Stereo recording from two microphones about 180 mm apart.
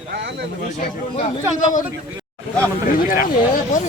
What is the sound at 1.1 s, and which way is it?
Speech, 40° left (ahead or behind).